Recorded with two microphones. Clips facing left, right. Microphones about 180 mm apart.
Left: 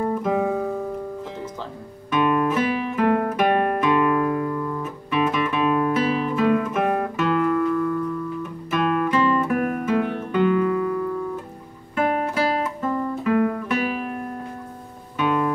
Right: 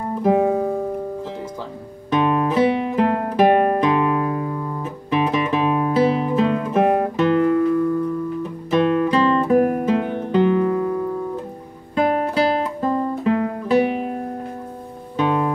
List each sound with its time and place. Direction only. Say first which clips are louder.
0.2 s guitar: right 5 dB; 25° right (ahead or behind)
2.0 s guitar: right 2 dB; 25° right (ahead or behind)
15.1 s music: right 2 dB; 25° right (ahead or behind)